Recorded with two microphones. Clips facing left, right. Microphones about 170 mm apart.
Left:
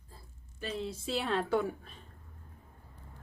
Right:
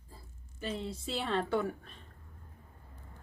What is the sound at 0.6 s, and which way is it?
A woman's voice, centre (ahead or behind).